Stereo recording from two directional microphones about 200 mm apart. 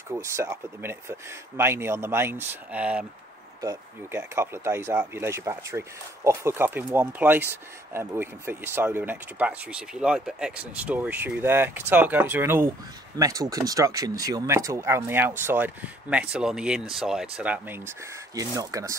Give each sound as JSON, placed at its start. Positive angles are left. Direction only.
{"t": 0.1, "sound": "speech", "side_deg": -15}